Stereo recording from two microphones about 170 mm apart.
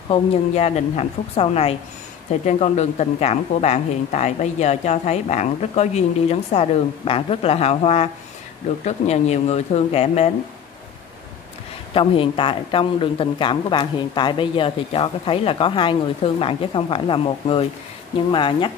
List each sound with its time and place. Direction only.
0.1 s speech: 35° left (ahead or behind)
11.9 s speech: 30° left (ahead or behind)